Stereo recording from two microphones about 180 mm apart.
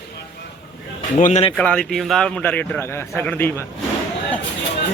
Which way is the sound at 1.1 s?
40° left (ahead or behind).